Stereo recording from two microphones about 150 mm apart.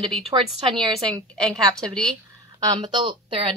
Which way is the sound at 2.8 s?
30° right (ahead or behind).